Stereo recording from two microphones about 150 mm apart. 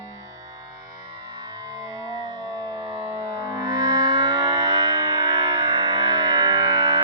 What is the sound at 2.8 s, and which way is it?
Siren, 40° right (ahead or behind).